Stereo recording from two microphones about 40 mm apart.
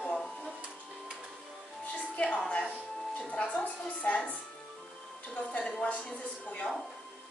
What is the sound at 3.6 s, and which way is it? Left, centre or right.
Speech, left.